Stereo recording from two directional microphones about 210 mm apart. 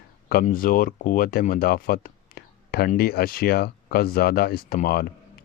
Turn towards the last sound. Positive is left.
turn(degrees=45)  # may be behind; listen again after turning